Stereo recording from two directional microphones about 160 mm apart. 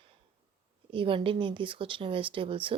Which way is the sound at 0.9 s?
35° right (ahead or behind).